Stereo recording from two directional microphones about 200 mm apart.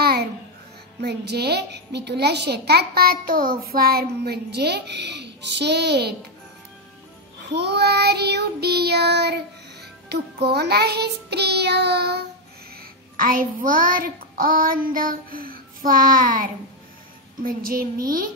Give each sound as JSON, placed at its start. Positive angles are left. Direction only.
{"t": 0.0, "sound": "babbling", "side_deg": -50}
{"t": 1.0, "sound": "a child's voice", "side_deg": -55}
{"t": 7.5, "sound": "a child's voice", "side_deg": -55}
{"t": 13.1, "sound": "speech", "side_deg": -45}